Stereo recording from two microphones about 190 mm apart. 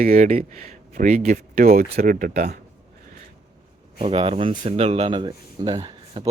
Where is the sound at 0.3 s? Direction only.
35° right (ahead or behind).